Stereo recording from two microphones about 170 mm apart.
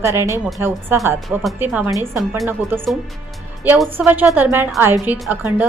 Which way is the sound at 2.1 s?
Centre (ahead or behind).